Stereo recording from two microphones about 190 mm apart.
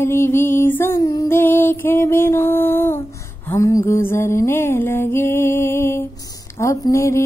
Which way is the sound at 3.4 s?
15° left (ahead or behind).